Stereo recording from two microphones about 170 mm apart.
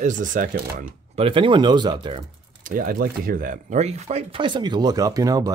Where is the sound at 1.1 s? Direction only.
30° right (ahead or behind).